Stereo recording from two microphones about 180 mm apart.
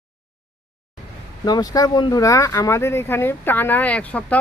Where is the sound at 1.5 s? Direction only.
20° left (ahead or behind).